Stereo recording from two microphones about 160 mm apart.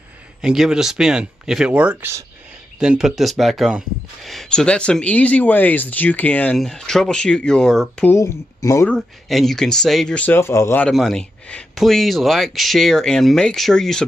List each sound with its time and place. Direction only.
0.4 s speech: 5° right (ahead or behind)
2.8 s speech: 5° right (ahead or behind)
8.1 s speech: 20° left (ahead or behind)
8.8 s speech: 5° left (ahead or behind)
10.9 s speech: centre (ahead or behind)